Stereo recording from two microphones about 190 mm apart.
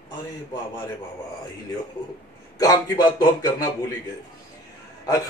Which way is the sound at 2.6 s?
20° left (ahead or behind).